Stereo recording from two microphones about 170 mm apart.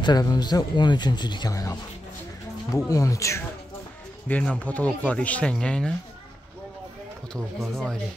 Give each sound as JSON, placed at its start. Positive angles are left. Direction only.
{"t": 0.0, "sound": "speech", "side_deg": 25}
{"t": 2.9, "sound": "speech", "side_deg": 20}
{"t": 4.3, "sound": "speech", "side_deg": 5}
{"t": 7.3, "sound": "speech", "side_deg": 0}